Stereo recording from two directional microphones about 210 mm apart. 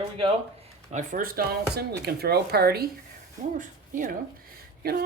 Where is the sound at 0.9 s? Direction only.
40° right (ahead or behind).